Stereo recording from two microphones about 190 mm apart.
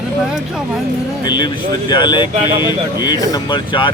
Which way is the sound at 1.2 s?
20° left (ahead or behind).